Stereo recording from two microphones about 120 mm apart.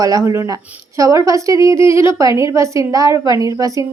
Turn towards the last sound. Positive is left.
turn(degrees=-30)  # may be behind; listen again after turning